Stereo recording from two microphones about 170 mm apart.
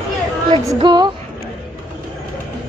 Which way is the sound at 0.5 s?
25° right (ahead or behind).